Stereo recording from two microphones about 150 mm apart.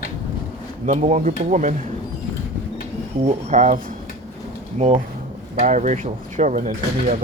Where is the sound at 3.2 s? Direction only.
55° right (ahead or behind).